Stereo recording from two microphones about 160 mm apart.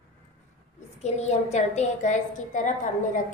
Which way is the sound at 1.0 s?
45° left (ahead or behind).